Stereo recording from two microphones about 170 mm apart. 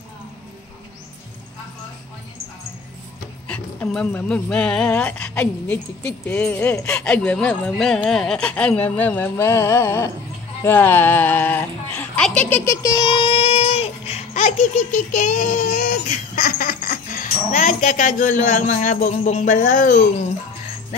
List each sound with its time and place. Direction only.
3.4 s speech: 5° left (ahead or behind); by 20.3 s 45° left (ahead or behind)